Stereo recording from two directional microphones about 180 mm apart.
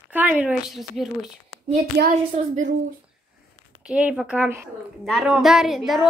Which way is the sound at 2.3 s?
45° right (ahead or behind).